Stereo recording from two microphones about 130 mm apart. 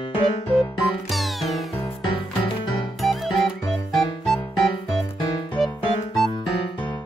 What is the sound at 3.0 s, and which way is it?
Music, centre (ahead or behind).